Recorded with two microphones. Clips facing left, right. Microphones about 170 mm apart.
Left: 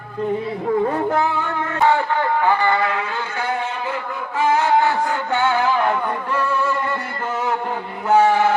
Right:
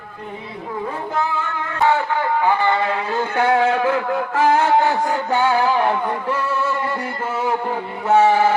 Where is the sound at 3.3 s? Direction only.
85° right.